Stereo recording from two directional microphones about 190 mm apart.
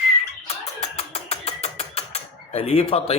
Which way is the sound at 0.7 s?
35° left (ahead or behind).